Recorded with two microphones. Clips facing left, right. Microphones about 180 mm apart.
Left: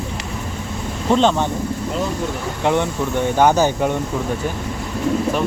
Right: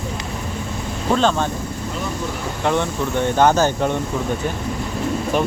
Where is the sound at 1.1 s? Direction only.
20° left (ahead or behind).